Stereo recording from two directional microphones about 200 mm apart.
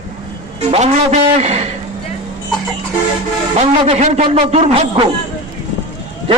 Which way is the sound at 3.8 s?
30° right (ahead or behind).